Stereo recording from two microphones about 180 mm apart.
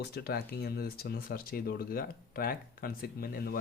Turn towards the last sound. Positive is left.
turn(degrees=55)  # may be behind; listen again after turning